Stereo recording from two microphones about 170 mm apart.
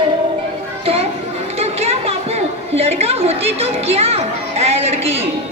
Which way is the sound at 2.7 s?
35° right (ahead or behind).